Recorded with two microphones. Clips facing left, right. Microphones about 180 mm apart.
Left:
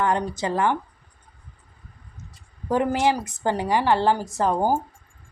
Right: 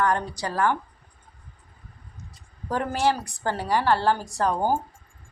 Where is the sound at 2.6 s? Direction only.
20° left (ahead or behind).